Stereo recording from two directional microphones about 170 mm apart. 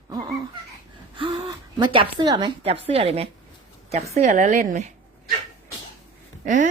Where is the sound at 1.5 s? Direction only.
25° right (ahead or behind); by 4.9 s 45° right (ahead or behind).